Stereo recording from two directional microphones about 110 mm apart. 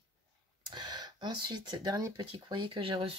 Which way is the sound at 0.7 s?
40° right (ahead or behind).